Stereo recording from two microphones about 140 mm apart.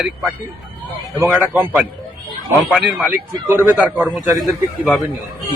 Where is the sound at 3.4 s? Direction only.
15° right (ahead or behind).